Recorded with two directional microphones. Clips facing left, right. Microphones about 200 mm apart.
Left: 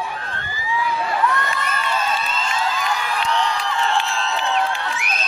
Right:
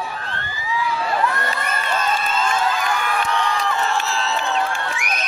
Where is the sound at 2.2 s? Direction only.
50° right (ahead or behind).